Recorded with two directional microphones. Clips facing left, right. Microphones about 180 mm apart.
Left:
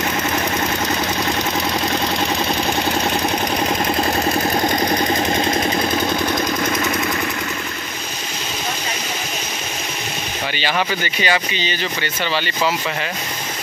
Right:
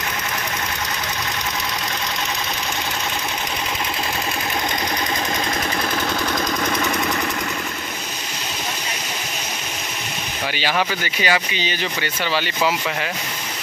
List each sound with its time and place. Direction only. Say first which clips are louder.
5.3 s engine: left 5 dB; 25° left (ahead or behind)
6.2 s vehicle: left 3 dB; 10° left (ahead or behind)
11.1 s speech: even; 5° right (ahead or behind)